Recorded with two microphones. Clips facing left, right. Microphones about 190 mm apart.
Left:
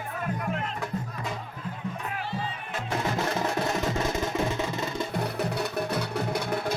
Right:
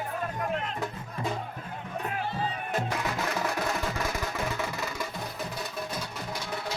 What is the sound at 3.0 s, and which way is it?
Music, 25° left (ahead or behind).